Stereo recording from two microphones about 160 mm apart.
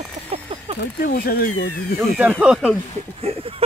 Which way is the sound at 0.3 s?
40° right (ahead or behind).